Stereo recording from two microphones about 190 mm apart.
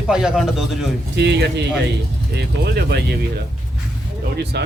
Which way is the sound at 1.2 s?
65° right (ahead or behind).